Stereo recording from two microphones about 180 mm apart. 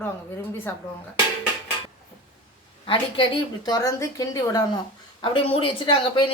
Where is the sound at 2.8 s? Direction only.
30° left (ahead or behind).